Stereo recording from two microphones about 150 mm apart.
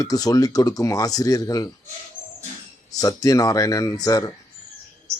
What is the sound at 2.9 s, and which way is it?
Speech, 25° left (ahead or behind).